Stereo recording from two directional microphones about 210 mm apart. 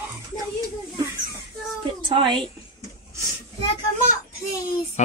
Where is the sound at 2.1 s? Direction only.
25° right (ahead or behind).